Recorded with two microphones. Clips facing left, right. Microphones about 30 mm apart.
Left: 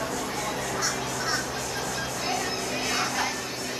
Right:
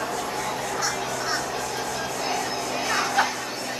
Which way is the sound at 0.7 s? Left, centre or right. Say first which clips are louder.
Right 2 dB; centre.